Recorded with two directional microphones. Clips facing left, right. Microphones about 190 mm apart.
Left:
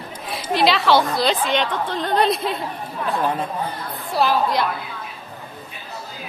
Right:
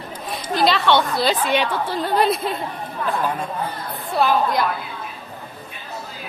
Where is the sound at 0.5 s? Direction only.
Centre (ahead or behind).